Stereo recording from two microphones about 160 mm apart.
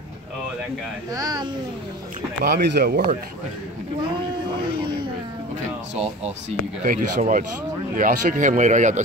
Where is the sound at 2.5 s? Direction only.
90° right; by 3.2 s 65° right (ahead or behind).